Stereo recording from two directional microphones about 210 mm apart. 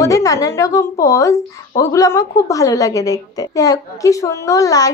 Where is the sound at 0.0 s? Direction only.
15° left (ahead or behind).